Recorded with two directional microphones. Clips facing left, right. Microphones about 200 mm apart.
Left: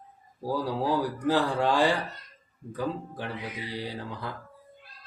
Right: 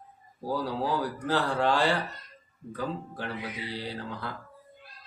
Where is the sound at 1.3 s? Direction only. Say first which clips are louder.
Left 1 dB; 15° left (ahead or behind).